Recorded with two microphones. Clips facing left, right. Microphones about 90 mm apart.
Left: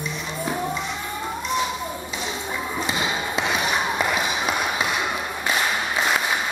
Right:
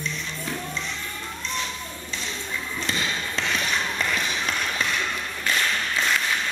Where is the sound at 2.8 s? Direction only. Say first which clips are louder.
Left 2 dB; 15° left (ahead or behind).